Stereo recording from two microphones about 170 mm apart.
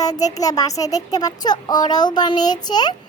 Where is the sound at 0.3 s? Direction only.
20° left (ahead or behind).